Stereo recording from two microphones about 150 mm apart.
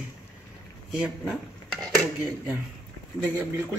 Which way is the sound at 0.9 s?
5° right (ahead or behind).